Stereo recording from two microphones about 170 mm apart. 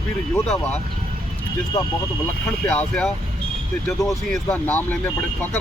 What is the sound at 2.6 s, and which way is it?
Speech, 5° left (ahead or behind).